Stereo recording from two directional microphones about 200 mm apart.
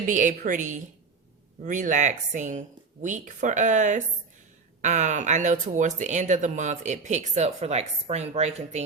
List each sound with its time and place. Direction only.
0.1 s speech: 40° right (ahead or behind)